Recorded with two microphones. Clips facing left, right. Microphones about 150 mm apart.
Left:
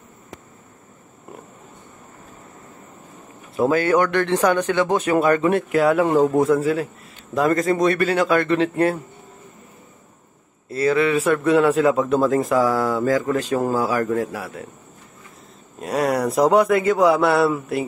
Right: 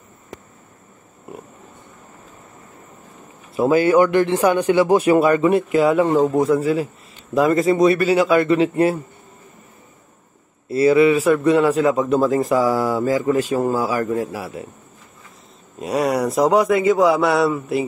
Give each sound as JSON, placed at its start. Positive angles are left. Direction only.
{"t": 3.5, "sound": "a man's voice", "side_deg": -5}
{"t": 10.7, "sound": "a man's voice", "side_deg": -5}
{"t": 15.8, "sound": "a man's voice", "side_deg": -5}